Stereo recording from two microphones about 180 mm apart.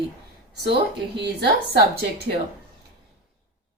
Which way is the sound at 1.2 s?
65° right (ahead or behind).